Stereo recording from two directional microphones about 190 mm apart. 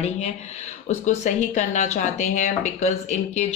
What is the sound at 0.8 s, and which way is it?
Speech, 35° left (ahead or behind).